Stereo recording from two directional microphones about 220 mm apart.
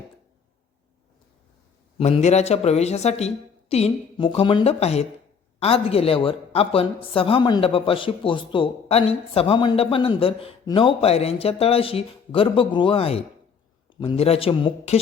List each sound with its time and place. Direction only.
2.0 s a woman's voice: 30° left (ahead or behind)